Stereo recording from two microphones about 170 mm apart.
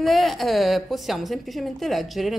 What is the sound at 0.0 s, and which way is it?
A woman's voice, centre (ahead or behind).